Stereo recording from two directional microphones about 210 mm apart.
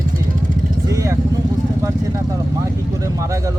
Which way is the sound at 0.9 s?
15° right (ahead or behind).